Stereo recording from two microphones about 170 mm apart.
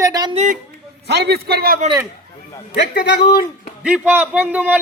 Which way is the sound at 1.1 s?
80° right.